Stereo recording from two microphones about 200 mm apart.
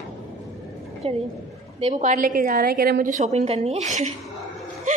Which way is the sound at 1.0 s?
30° right (ahead or behind).